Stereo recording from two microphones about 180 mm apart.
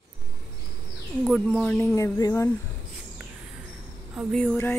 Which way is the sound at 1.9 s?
15° left (ahead or behind).